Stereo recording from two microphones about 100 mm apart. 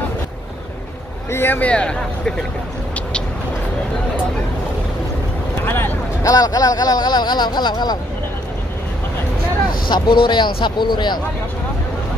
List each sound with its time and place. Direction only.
1.3 s speech: 20° left (ahead or behind)
5.7 s vehicle: 20° left (ahead or behind)
6.2 s speech: 40° left (ahead or behind)
9.8 s speech: 50° left (ahead or behind)